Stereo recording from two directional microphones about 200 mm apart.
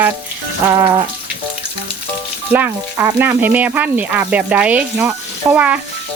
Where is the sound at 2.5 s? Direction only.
10° right (ahead or behind).